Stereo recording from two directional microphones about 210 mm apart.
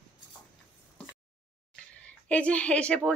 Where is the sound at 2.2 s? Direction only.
5° left (ahead or behind).